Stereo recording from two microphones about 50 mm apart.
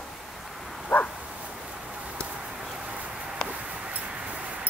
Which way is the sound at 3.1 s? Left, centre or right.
Centre.